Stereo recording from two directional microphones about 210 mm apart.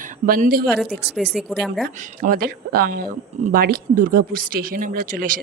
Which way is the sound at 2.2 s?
45° right (ahead or behind).